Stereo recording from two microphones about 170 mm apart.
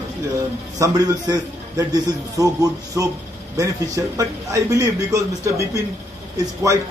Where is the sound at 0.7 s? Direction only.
20° right (ahead or behind).